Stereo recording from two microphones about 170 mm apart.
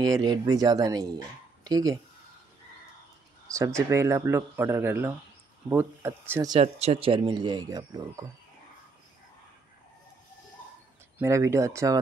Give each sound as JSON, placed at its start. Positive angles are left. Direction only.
{"t": 0.0, "sound": "speech", "side_deg": -25}
{"t": 3.5, "sound": "speech", "side_deg": -20}
{"t": 6.6, "sound": "speech", "side_deg": -40}
{"t": 11.1, "sound": "speech", "side_deg": -15}